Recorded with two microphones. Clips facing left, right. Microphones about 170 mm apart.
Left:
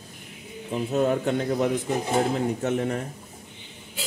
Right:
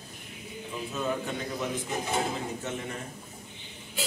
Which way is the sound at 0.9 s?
60° left (ahead or behind).